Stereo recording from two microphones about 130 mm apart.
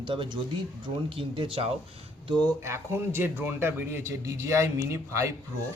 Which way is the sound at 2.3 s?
35° right (ahead or behind).